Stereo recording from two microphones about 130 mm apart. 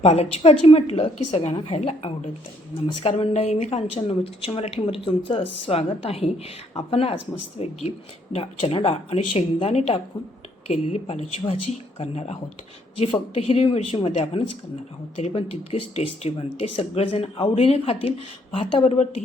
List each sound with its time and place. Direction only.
0.0 s a woman's voice: 50° left (ahead or behind)